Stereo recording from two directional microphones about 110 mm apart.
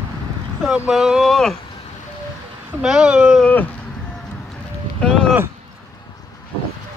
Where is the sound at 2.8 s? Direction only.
5° right (ahead or behind).